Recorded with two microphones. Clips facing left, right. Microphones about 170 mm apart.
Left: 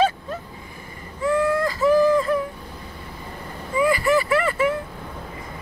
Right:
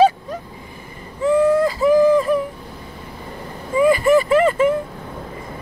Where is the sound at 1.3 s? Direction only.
15° right (ahead or behind).